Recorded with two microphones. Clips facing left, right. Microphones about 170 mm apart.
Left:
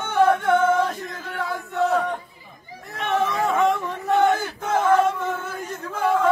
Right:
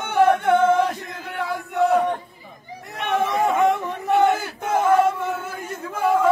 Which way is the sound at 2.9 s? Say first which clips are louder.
Right 1 dB; 15° right (ahead or behind).